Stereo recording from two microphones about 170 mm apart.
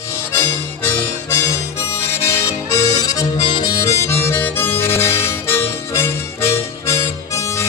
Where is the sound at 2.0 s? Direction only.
15° left (ahead or behind).